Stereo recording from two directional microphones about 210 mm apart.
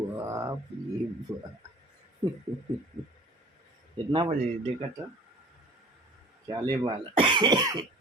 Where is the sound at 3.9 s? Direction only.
25° right (ahead or behind).